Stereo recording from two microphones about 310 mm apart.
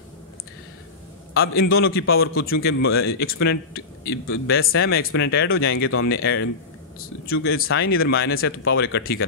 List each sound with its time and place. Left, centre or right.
1.3 s a man's voice: left